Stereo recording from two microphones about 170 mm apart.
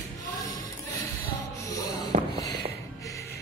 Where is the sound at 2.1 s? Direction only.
55° right (ahead or behind).